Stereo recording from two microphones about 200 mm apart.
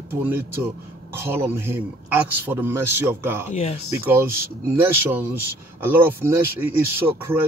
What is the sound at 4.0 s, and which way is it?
Speech, 10° right (ahead or behind).